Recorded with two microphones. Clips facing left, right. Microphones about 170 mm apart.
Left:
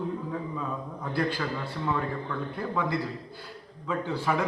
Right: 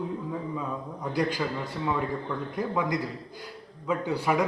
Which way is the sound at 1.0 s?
15° right (ahead or behind).